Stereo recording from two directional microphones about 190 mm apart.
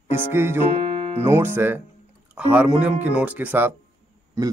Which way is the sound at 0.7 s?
35° right (ahead or behind).